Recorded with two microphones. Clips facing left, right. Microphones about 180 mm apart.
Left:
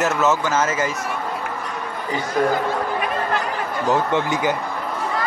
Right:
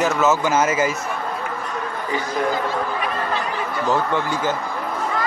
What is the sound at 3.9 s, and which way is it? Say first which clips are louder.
Speech: left 2 dB; 20° left (ahead or behind).